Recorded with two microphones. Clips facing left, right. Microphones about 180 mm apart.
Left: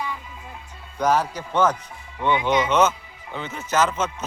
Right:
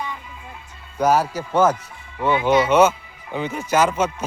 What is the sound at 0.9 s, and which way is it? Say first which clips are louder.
Speech: right 3 dB; 10° right (ahead or behind).